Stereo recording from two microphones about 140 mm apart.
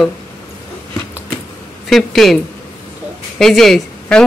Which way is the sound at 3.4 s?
Centre (ahead or behind).